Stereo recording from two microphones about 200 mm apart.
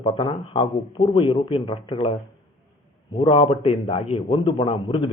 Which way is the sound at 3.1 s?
25° left (ahead or behind).